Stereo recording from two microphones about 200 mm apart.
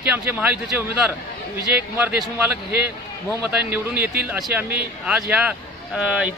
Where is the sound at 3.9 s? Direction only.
50° right (ahead or behind).